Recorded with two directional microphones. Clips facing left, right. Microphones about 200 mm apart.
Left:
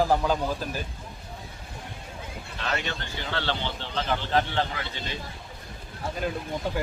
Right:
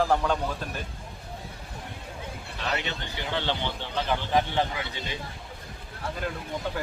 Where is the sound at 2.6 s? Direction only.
15° right (ahead or behind).